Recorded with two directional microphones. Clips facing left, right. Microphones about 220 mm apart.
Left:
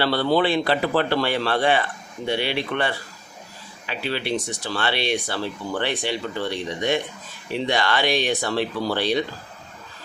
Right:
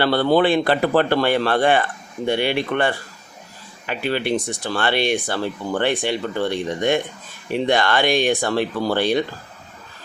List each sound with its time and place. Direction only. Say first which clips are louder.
0.0 s speech: right 4 dB; 50° right (ahead or behind)